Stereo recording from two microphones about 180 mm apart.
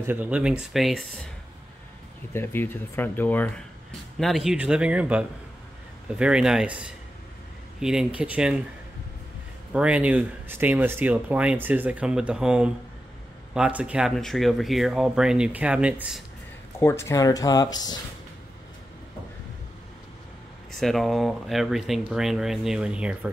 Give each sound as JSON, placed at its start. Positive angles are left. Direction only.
{"t": 0.0, "sound": "speech", "side_deg": -10}
{"t": 2.3, "sound": "speech", "side_deg": 10}
{"t": 4.2, "sound": "speech", "side_deg": 0}
{"t": 9.7, "sound": "speech", "side_deg": -5}
{"t": 16.8, "sound": "speech", "side_deg": 15}
{"t": 20.8, "sound": "speech", "side_deg": 0}